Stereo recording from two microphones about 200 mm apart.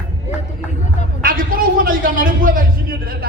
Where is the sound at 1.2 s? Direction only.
45° right (ahead or behind).